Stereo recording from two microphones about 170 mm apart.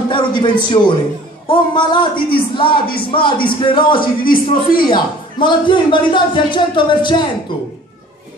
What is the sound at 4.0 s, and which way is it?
Speech, 60° left (ahead or behind).